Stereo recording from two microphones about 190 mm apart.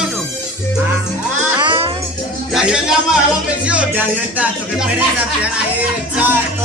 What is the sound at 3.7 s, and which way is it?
Speech, 10° right (ahead or behind).